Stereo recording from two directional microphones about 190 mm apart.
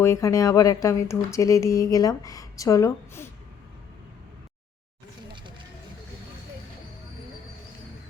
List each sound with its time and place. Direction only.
0.0 s speech: 15° left (ahead or behind)